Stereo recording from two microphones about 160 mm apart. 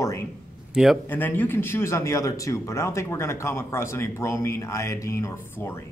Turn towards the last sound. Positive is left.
turn(degrees=15)  # may be behind; listen again after turning